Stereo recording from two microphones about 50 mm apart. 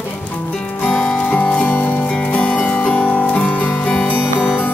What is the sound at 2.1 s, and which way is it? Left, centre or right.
Music, left.